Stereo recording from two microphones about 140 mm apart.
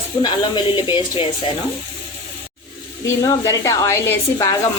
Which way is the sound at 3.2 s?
25° left (ahead or behind).